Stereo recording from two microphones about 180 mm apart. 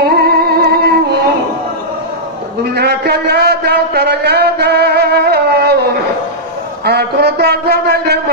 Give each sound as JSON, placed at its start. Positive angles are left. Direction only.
{"t": 0.0, "sound": "music", "side_deg": -65}
{"t": 2.6, "sound": "a sound", "side_deg": -65}
{"t": 6.8, "sound": "a man's voice", "side_deg": -65}